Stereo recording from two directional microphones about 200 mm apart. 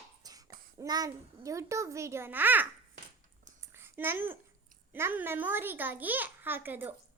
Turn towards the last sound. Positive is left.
turn(degrees=-10)  # may be behind; listen again after turning